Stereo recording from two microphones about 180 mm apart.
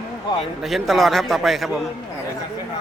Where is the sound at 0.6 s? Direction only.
Centre (ahead or behind).